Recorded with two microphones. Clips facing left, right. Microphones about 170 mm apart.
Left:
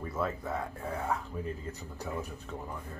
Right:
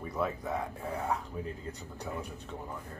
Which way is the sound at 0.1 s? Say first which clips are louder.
Right 1 dB; centre (ahead or behind).